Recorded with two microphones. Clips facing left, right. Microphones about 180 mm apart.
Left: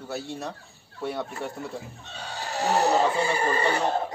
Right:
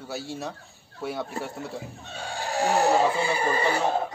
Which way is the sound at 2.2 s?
50° right (ahead or behind).